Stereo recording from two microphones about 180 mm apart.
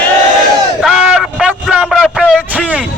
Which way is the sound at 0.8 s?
5° right (ahead or behind).